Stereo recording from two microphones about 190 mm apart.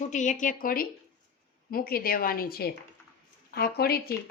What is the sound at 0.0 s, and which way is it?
A woman's voice, 40° left (ahead or behind).